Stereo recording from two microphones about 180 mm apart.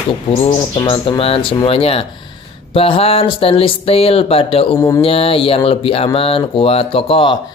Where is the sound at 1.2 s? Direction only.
30° left (ahead or behind).